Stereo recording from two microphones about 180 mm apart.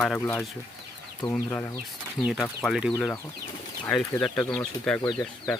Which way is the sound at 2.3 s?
Centre (ahead or behind).